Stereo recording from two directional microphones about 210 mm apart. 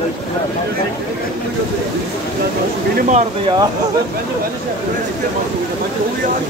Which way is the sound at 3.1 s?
30° right (ahead or behind).